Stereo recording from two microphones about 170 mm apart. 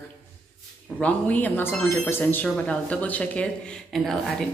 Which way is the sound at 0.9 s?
10° left (ahead or behind).